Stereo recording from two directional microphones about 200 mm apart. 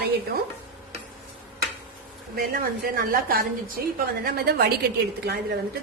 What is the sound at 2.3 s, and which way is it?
A woman's voice, 50° right (ahead or behind).